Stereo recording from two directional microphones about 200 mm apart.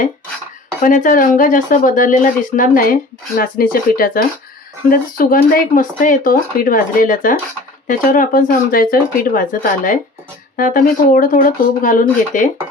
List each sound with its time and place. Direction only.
0.8 s speech: 40° left (ahead or behind)